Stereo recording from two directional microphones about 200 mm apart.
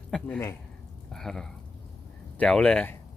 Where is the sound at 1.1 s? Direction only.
Centre (ahead or behind).